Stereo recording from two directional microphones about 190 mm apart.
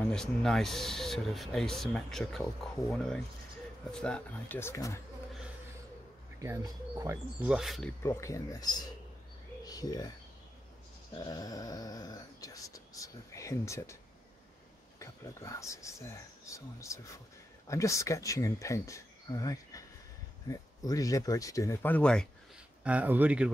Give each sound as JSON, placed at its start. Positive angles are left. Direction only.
{"t": 0.1, "sound": "speech", "side_deg": 5}
{"t": 6.4, "sound": "speech", "side_deg": -15}
{"t": 7.4, "sound": "speech", "side_deg": 0}
{"t": 8.0, "sound": "speech", "side_deg": 15}
{"t": 11.1, "sound": "speech", "side_deg": 20}
{"t": 15.0, "sound": "speech", "side_deg": 15}
{"t": 22.8, "sound": "speech", "side_deg": -10}